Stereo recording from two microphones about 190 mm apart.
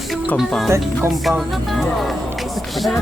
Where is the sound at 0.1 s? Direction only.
Centre (ahead or behind).